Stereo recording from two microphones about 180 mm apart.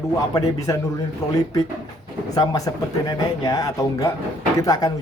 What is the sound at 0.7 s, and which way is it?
Speech, 20° left (ahead or behind).